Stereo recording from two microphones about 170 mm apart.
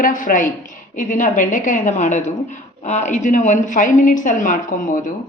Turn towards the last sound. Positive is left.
turn(degrees=55)  # may be behind; listen again after turning